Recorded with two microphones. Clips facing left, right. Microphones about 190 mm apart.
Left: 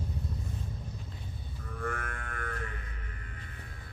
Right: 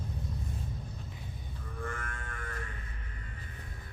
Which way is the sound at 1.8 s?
60° left (ahead or behind).